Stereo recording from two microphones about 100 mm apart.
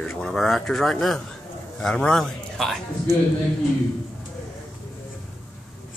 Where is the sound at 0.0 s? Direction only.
5° left (ahead or behind).